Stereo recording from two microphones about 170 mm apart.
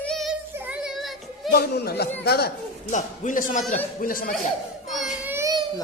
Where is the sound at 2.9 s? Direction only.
45° left (ahead or behind).